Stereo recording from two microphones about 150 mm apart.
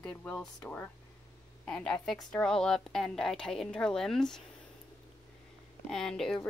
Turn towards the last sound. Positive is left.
turn(degrees=5)  # may be behind; listen again after turning